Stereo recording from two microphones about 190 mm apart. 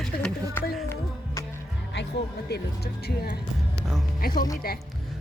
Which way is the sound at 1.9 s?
65° left (ahead or behind).